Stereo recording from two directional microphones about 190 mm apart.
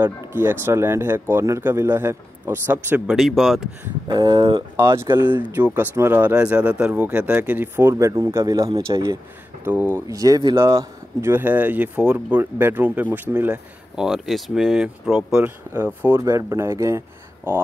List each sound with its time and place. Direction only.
0.0 s speech: 10° right (ahead or behind)
4.1 s speech: 25° right (ahead or behind)
4.7 s speech: 15° right (ahead or behind)
5.2 s speech: 10° right (ahead or behind)